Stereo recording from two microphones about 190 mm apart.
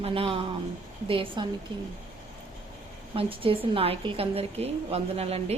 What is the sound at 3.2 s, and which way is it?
A woman's voice, 30° right (ahead or behind).